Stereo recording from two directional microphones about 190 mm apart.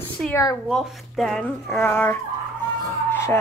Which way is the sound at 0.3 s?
20° left (ahead or behind).